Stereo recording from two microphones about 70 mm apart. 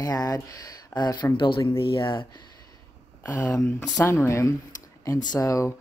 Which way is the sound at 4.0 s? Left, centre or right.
Left.